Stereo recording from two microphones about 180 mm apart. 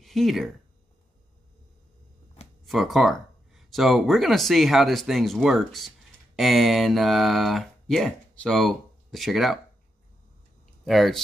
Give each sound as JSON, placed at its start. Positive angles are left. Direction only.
{"t": 0.0, "sound": "speech", "side_deg": 0}
{"t": 2.6, "sound": "speech", "side_deg": 0}
{"t": 10.9, "sound": "speech", "side_deg": 0}